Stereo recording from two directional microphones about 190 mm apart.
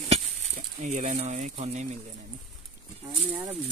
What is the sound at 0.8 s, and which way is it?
Speech, 40° right (ahead or behind).